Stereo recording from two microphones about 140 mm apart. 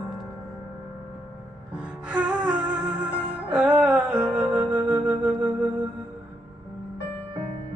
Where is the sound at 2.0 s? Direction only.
5° right (ahead or behind).